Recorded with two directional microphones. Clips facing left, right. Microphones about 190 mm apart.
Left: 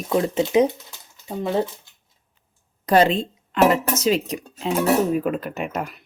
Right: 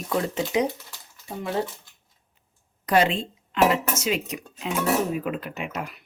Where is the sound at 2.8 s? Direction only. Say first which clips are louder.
Left 4 dB; 35° left (ahead or behind).